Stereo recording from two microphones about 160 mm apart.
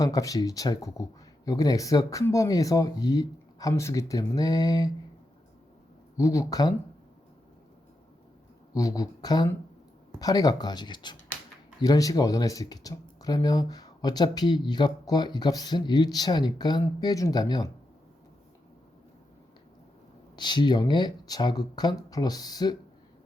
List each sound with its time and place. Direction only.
0.0 s speech: 20° left (ahead or behind)
6.1 s speech: 20° left (ahead or behind)
8.7 s speech: 20° left (ahead or behind)
20.3 s speech: 30° left (ahead or behind)